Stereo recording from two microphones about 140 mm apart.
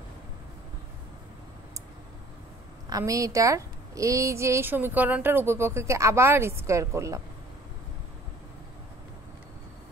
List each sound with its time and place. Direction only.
2.9 s a woman's voice: 25° right (ahead or behind)